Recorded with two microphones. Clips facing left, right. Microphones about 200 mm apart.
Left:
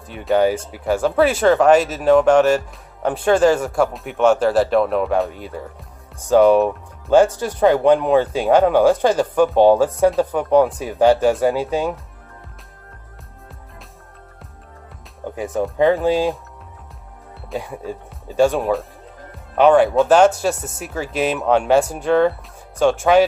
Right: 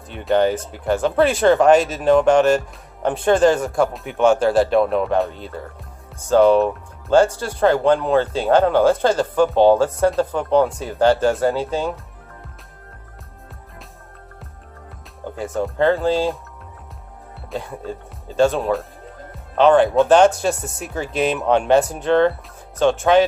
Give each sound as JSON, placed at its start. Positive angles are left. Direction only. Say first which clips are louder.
{"t": 0.1, "sound": "speech", "louder": "left 1 dB", "side_deg": 5}
{"t": 15.3, "sound": "speech", "louder": "left 2 dB", "side_deg": 15}
{"t": 17.6, "sound": "speech", "louder": "left 1 dB", "side_deg": 15}